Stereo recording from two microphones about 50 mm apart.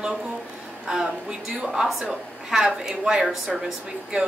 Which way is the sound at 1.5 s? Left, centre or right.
Centre.